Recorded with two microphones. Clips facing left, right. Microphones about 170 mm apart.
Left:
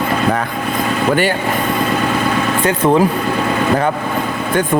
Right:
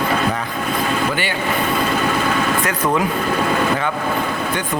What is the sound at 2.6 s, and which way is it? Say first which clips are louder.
Speech: left 6 dB; 30° left (ahead or behind).